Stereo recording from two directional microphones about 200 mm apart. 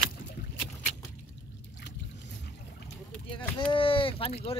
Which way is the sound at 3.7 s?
25° left (ahead or behind).